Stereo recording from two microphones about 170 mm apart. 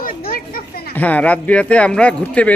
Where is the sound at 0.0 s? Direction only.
60° left (ahead or behind).